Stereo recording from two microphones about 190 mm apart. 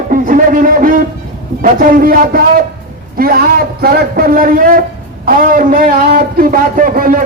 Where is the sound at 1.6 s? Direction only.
45° right (ahead or behind).